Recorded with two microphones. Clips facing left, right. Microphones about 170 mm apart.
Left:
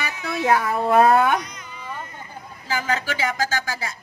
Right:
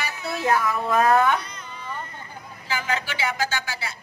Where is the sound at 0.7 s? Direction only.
30° left (ahead or behind).